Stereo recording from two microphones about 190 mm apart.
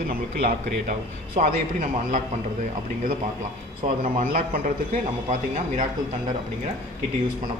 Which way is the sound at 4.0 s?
45° right (ahead or behind).